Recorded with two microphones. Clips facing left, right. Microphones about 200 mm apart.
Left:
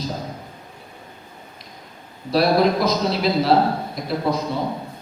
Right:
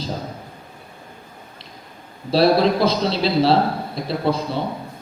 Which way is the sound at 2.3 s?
30° right (ahead or behind).